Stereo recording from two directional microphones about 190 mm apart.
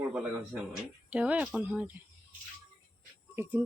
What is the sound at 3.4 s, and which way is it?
Speech, 10° right (ahead or behind).